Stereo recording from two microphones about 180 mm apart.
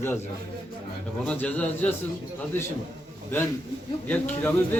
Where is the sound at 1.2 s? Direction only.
5° left (ahead or behind).